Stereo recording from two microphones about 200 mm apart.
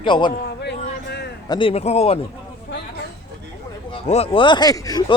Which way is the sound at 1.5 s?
25° left (ahead or behind).